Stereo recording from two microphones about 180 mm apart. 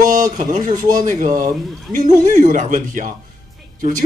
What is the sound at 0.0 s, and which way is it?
Speech, 45° right (ahead or behind).